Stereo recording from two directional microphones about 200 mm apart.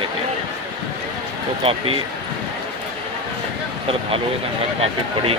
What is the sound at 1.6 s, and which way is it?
Speech, 30° right (ahead or behind).